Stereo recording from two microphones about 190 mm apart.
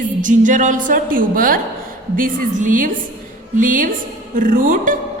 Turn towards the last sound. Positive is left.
turn(degrees=-45)  # may be behind; listen again after turning